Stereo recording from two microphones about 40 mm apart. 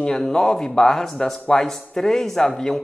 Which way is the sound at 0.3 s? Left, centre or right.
Centre.